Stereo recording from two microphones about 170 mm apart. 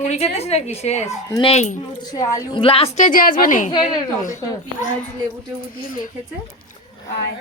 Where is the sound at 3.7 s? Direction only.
25° left (ahead or behind).